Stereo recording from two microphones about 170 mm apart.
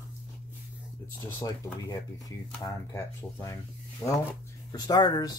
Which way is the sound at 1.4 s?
20° left (ahead or behind).